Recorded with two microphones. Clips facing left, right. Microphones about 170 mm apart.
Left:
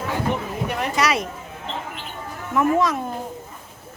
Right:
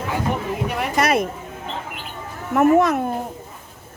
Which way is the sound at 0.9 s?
55° right (ahead or behind).